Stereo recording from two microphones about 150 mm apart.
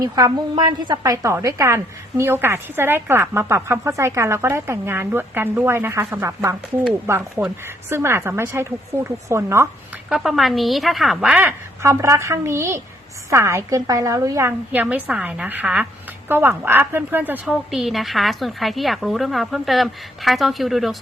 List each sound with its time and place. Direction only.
0.0 s a woman's voice: 25° right (ahead or behind)
10.1 s a woman's voice: centre (ahead or behind)